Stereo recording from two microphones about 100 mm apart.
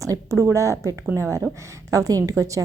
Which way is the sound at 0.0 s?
30° right (ahead or behind).